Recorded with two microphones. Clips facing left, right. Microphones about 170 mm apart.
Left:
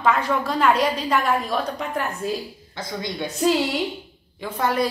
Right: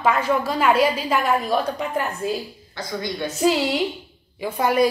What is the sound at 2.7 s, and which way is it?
Speech, 20° left (ahead or behind).